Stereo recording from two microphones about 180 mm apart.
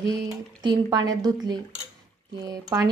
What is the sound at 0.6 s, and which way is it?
Speech, 25° right (ahead or behind).